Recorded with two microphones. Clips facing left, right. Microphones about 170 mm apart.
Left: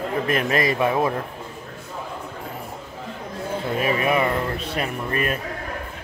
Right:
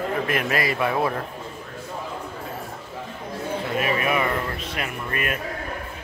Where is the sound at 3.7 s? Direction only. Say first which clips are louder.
Left 2 dB; 35° left (ahead or behind).